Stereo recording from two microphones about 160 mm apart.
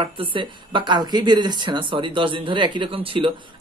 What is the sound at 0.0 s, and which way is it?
Speech, 30° right (ahead or behind).